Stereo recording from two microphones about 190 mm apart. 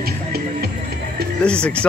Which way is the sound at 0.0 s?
55° right (ahead or behind).